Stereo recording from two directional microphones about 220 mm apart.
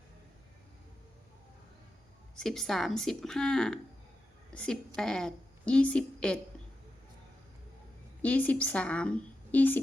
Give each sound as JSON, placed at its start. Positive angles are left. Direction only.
{"t": 2.3, "sound": "a woman's voice", "side_deg": 0}
{"t": 8.2, "sound": "a woman's voice", "side_deg": 5}